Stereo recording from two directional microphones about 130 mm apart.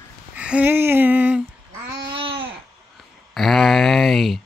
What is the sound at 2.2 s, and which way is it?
Babbling, 40° right (ahead or behind).